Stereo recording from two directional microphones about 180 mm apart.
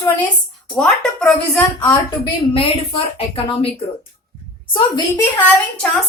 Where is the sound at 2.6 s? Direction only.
30° left (ahead or behind).